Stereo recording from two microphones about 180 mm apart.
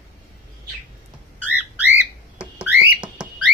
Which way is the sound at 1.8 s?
10° right (ahead or behind).